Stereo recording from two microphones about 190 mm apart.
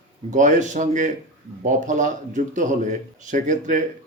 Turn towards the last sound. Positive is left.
turn(degrees=-40)  # may be behind; listen again after turning